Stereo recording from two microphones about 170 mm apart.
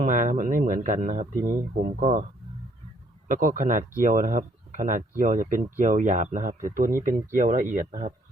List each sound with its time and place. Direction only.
0.0 s speech: 50° right (ahead or behind)
3.4 s speech: 50° right (ahead or behind)